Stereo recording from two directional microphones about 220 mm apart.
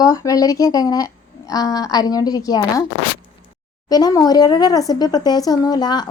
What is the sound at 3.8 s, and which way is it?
Speech, 15° left (ahead or behind).